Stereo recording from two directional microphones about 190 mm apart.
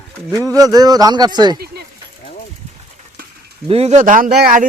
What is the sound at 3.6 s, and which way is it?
Speech, 30° right (ahead or behind).